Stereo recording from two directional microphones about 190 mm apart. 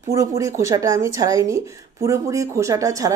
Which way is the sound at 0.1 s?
15° right (ahead or behind).